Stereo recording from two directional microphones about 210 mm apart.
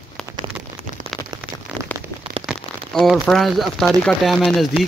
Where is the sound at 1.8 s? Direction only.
25° right (ahead or behind).